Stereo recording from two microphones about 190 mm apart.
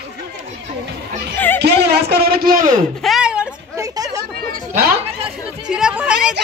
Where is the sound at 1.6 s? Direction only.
60° right (ahead or behind).